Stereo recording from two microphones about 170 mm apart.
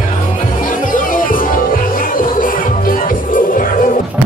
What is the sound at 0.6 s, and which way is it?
Music, 50° left (ahead or behind).